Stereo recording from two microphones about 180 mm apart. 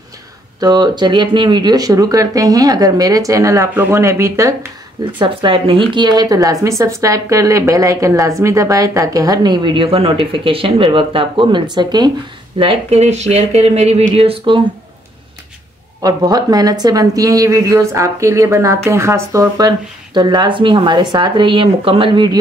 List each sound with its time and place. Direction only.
0.6 s a woman's voice: 20° right (ahead or behind)
5.2 s a woman's voice: 30° right (ahead or behind)
16.0 s a woman's voice: 20° right (ahead or behind)